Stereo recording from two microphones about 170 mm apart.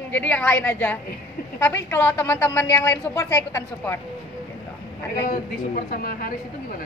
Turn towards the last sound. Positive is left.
turn(degrees=55)  # may be behind; listen again after turning